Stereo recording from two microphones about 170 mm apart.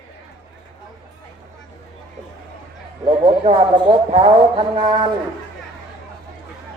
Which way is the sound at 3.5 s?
25° right (ahead or behind).